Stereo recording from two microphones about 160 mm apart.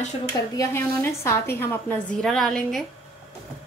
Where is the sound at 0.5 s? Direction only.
15° left (ahead or behind).